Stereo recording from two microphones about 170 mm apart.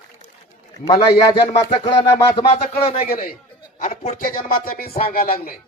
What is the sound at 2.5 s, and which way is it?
Speech, 40° left (ahead or behind).